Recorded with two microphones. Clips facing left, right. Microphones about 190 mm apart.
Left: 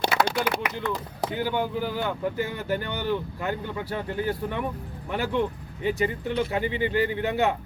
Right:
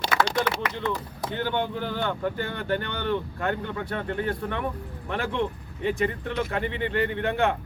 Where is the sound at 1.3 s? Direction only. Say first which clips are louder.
Even; 10° left (ahead or behind).